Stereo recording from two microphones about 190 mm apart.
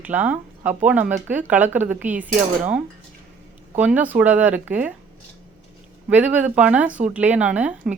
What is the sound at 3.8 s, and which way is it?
Speech, 10° right (ahead or behind).